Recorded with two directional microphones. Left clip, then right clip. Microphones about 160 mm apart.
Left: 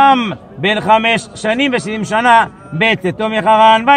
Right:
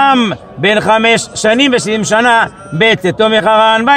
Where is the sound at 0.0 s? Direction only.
30° right (ahead or behind).